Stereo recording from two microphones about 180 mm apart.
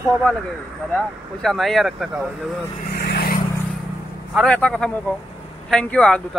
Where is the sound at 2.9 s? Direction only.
60° left (ahead or behind).